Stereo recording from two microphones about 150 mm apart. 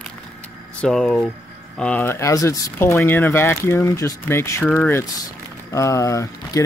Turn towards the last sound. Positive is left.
turn(degrees=20)  # may be behind; listen again after turning